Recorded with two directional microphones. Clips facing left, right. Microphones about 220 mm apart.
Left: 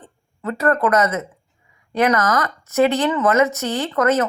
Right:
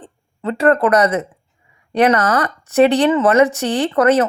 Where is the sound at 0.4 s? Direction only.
30° right (ahead or behind).